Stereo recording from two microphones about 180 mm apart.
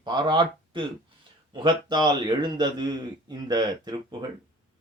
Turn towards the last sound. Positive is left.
turn(degrees=-25)  # may be behind; listen again after turning